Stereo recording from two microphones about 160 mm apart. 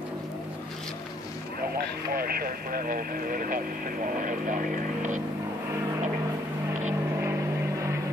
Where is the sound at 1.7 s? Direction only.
70° right (ahead or behind).